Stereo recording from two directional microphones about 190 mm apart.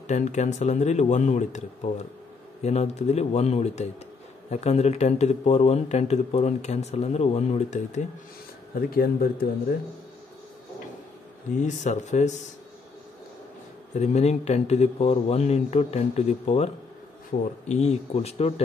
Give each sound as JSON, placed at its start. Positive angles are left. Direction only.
{"t": 0.0, "sound": "a man's voice", "side_deg": 40}
{"t": 2.6, "sound": "a man's voice", "side_deg": 35}
{"t": 8.9, "sound": "a man's voice", "side_deg": 50}
{"t": 11.5, "sound": "a man's voice", "side_deg": 40}
{"t": 13.9, "sound": "a man's voice", "side_deg": 35}